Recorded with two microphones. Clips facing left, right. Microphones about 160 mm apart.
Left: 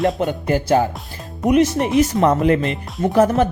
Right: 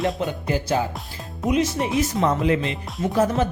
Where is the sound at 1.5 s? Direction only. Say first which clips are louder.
Left 6 dB; 60° left (ahead or behind).